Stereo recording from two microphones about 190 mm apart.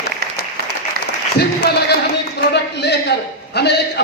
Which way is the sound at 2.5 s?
60° left (ahead or behind).